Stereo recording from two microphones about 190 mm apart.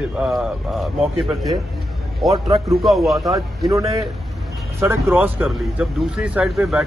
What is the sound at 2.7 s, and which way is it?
Speech, centre (ahead or behind).